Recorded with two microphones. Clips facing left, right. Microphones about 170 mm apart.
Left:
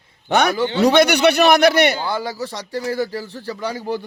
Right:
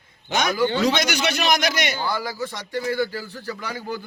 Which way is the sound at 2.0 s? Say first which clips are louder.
Left 2 dB; 25° left (ahead or behind).